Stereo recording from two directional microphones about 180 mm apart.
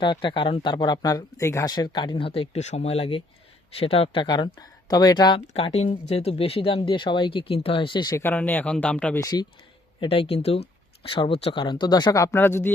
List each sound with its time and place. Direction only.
0.0 s speech: 25° left (ahead or behind); by 9.2 s 5° left (ahead or behind)
9.2 s speech: 25° left (ahead or behind)